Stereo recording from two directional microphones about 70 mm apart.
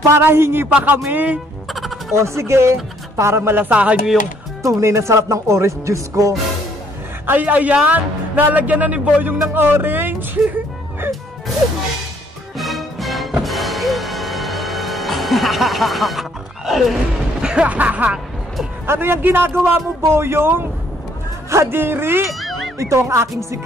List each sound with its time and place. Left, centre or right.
0.1 s speech: right
0.7 s a woman's voice: right
1.7 s music: centre
2.1 s speech: right
4.6 s speech: right
7.2 s a woman's voice: right
12.5 s music: centre; by 18.2 s right
18.9 s a man's voice: right
21.7 s speech: right
22.3 s music: centre
22.8 s speech: right